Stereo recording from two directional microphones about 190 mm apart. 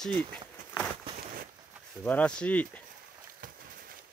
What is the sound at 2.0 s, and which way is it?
Speech, 5° left (ahead or behind).